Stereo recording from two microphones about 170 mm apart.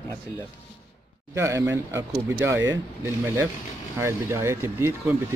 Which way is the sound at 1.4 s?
15° right (ahead or behind).